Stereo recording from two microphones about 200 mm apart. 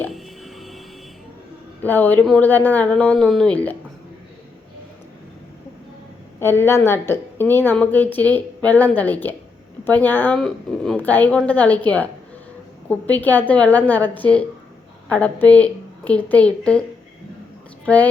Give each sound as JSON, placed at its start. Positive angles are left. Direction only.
{"t": 0.1, "sound": "a sound", "side_deg": 0}
{"t": 1.8, "sound": "a woman's voice", "side_deg": 10}
{"t": 6.4, "sound": "a woman's voice", "side_deg": 10}
{"t": 17.8, "sound": "a woman's voice", "side_deg": 5}